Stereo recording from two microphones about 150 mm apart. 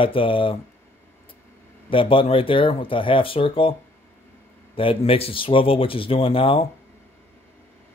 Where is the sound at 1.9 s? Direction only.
35° left (ahead or behind).